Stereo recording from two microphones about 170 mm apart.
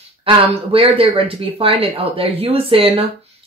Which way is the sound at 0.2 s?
35° right (ahead or behind).